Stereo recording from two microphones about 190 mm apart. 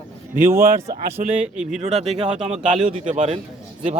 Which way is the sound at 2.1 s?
35° right (ahead or behind).